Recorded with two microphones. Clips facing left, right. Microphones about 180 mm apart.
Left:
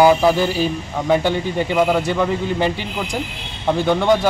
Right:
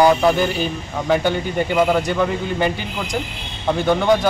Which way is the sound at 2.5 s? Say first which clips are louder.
Left 1 dB; 30° left (ahead or behind).